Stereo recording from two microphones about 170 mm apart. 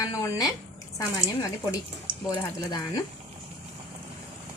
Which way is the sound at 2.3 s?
25° left (ahead or behind).